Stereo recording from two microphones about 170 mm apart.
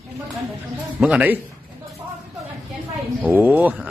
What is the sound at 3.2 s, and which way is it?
Speech, 10° right (ahead or behind).